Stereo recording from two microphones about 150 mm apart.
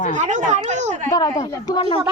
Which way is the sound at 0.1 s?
55° right (ahead or behind).